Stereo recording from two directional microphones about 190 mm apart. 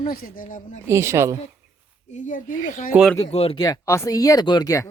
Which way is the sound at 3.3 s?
30° left (ahead or behind).